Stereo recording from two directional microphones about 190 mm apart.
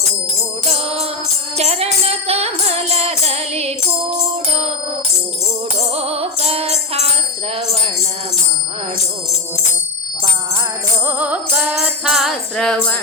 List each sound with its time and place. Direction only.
0.6 s music: 35° right (ahead or behind)
5.9 s music: 30° right (ahead or behind)
11.0 s music: 10° right (ahead or behind)